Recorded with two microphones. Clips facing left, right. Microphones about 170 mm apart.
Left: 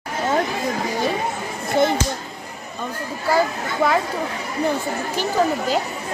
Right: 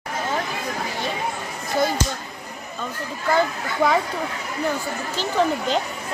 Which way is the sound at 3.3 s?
5° left (ahead or behind).